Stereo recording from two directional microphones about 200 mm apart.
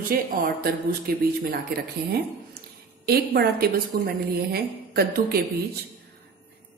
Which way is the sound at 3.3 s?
50° right (ahead or behind).